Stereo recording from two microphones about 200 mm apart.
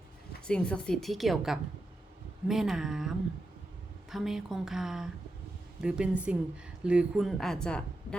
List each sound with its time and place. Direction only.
0.4 s a woman's voice: 5° left (ahead or behind)